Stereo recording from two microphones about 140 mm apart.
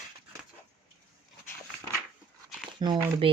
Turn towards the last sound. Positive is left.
turn(degrees=-35)  # may be behind; listen again after turning